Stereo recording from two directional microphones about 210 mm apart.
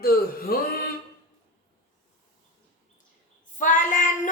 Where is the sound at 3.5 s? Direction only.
40° left (ahead or behind).